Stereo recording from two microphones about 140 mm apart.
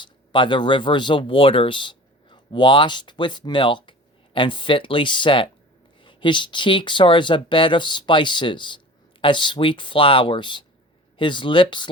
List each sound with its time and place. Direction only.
0.0 s speech: 35° left (ahead or behind)